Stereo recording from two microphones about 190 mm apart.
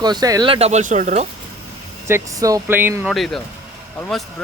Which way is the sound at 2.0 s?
15° right (ahead or behind).